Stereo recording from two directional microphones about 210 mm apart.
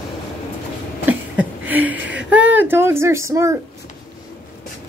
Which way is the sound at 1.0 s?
5° right (ahead or behind).